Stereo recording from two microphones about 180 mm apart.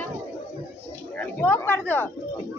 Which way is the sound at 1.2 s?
10° left (ahead or behind).